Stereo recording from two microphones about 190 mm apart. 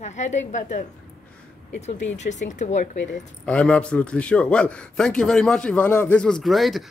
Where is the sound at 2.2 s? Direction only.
40° left (ahead or behind).